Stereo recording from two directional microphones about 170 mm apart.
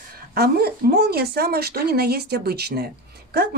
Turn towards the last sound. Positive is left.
turn(degrees=-70)  # may be behind; listen again after turning